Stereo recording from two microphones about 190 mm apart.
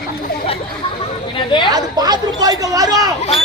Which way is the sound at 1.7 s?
20° right (ahead or behind).